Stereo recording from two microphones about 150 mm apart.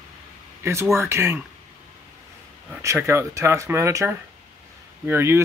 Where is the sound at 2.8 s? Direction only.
20° right (ahead or behind).